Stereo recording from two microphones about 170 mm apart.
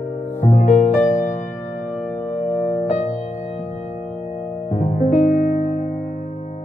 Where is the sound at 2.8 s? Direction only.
45° left (ahead or behind).